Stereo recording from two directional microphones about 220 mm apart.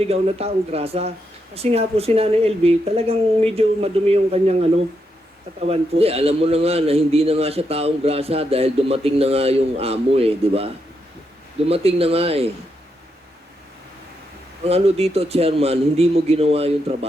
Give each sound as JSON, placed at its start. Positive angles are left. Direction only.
{"t": 0.0, "sound": "a man's voice", "side_deg": -25}
{"t": 14.6, "sound": "a man's voice", "side_deg": -25}